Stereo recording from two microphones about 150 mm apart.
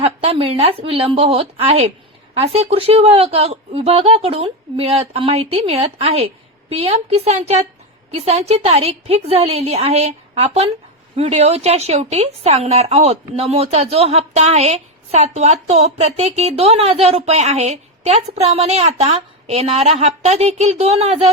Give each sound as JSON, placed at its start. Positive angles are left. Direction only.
{"t": 0.0, "sound": "a woman's voice", "side_deg": -40}